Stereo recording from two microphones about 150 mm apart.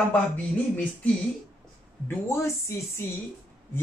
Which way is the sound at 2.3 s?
20° left (ahead or behind).